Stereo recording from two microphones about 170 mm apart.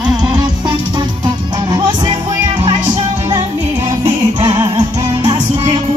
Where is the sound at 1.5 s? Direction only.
25° right (ahead or behind).